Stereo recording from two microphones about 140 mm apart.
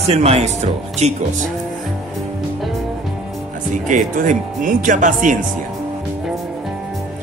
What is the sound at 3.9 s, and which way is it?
Speech, 65° right (ahead or behind).